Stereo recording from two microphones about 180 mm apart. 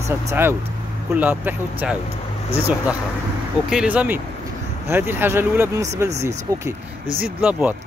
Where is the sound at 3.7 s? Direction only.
5° right (ahead or behind).